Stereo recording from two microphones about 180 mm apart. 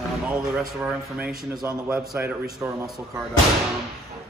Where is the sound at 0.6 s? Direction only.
5° right (ahead or behind).